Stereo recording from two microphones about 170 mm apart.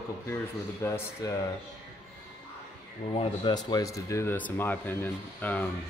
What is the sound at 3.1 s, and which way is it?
Speech, 30° left (ahead or behind).